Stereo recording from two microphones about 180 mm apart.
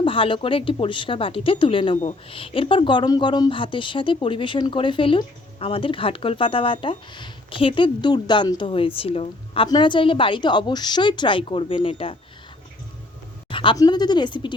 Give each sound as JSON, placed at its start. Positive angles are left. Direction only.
{"t": 0.0, "sound": "speech", "side_deg": 30}
{"t": 13.5, "sound": "speech", "side_deg": 30}